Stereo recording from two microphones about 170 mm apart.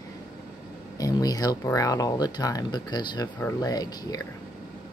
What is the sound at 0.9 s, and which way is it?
Speech, 20° left (ahead or behind).